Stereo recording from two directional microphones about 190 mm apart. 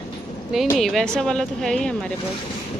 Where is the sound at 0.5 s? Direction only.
Centre (ahead or behind).